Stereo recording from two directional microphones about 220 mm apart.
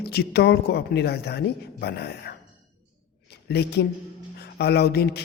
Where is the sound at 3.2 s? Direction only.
45° left (ahead or behind).